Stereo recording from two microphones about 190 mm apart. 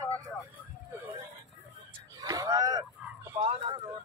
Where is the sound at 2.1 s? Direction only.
20° right (ahead or behind).